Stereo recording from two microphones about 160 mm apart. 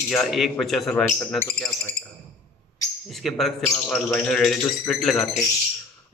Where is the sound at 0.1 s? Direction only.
Centre (ahead or behind).